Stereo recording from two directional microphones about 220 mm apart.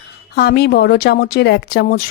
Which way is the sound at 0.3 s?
45° left (ahead or behind).